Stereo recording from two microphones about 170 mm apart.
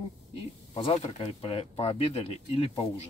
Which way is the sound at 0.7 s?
35° left (ahead or behind).